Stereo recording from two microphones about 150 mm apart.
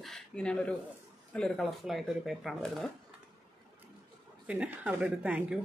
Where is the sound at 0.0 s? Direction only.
5° left (ahead or behind).